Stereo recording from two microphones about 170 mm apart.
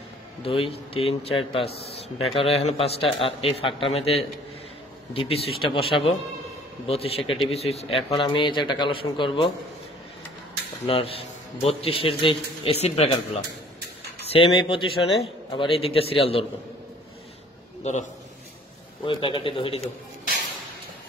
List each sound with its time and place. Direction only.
0.4 s a man's voice: 30° left (ahead or behind)
10.9 s a man's voice: 35° left (ahead or behind)
17.8 s a man's voice: 40° left (ahead or behind)
19.0 s a man's voice: 30° left (ahead or behind)